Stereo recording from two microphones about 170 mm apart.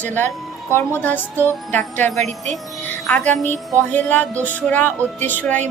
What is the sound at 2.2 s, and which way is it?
Wind chime, 45° right (ahead or behind).